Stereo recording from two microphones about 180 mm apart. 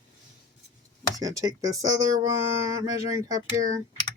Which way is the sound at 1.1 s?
20° right (ahead or behind).